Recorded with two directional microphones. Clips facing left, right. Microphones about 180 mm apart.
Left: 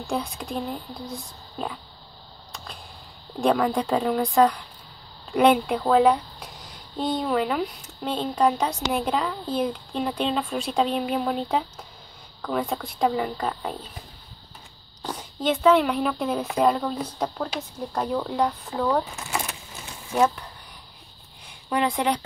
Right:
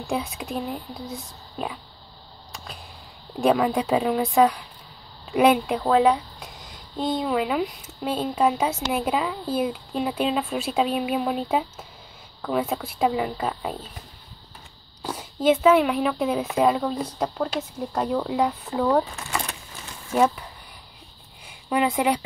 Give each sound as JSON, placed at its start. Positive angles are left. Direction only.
{"t": 0.0, "sound": "speech", "side_deg": 0}
{"t": 2.5, "sound": "a sound", "side_deg": 0}
{"t": 3.3, "sound": "speech", "side_deg": -5}
{"t": 15.0, "sound": "speech", "side_deg": -5}
{"t": 19.1, "sound": "speech", "side_deg": 5}
{"t": 20.1, "sound": "speech", "side_deg": -5}
{"t": 21.6, "sound": "speech", "side_deg": -5}